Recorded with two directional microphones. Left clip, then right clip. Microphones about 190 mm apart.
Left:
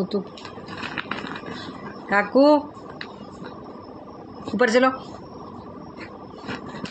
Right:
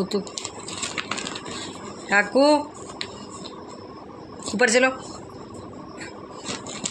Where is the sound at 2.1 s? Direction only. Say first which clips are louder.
Left 1 dB; 20° left (ahead or behind).